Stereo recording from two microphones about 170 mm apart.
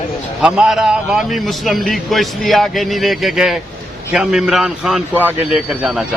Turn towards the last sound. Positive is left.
turn(degrees=-5)  # may be behind; listen again after turning